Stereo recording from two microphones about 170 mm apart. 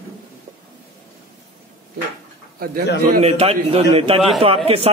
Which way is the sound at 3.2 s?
35° right (ahead or behind).